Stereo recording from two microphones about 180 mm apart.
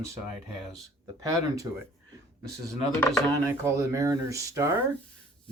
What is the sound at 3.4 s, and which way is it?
Speech, 15° right (ahead or behind).